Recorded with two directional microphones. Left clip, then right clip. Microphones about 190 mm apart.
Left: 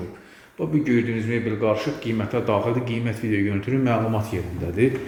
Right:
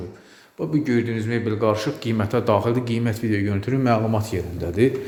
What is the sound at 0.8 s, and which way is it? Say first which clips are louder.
Speech: even; 30° right (ahead or behind).